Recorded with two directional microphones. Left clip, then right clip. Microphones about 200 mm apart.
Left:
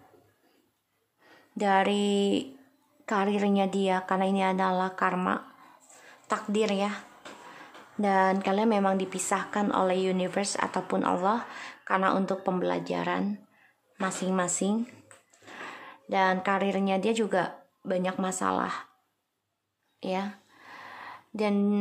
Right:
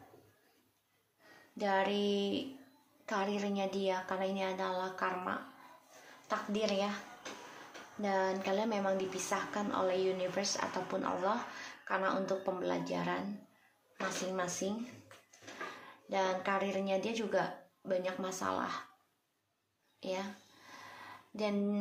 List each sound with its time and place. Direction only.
1.6 s a woman's voice: 45° left (ahead or behind)
8.0 s speech: 45° left (ahead or behind)
16.1 s speech: 40° left (ahead or behind)
20.0 s speech: 40° left (ahead or behind)
20.7 s a sound: 40° left (ahead or behind)